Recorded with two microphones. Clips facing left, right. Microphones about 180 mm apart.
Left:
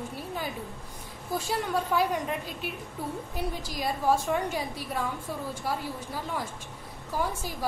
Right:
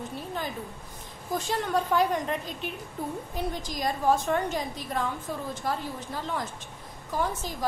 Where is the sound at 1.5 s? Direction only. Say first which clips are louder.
Right 2 dB; 5° left (ahead or behind).